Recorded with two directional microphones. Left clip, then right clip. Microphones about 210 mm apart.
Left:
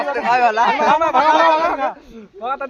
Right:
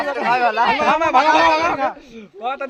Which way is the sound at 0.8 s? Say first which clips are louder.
Left 1 dB; 25° right (ahead or behind).